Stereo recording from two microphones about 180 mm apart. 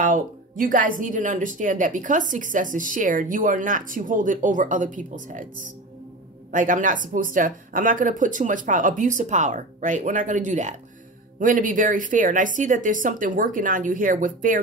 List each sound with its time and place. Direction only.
0.0 s speech: 50° right (ahead or behind)
6.5 s speech: 45° right (ahead or behind)